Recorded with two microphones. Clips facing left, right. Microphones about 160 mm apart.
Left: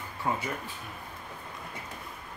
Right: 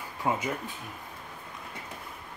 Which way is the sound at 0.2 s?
20° right (ahead or behind).